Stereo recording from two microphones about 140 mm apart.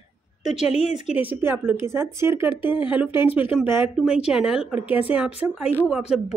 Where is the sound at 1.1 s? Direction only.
15° right (ahead or behind).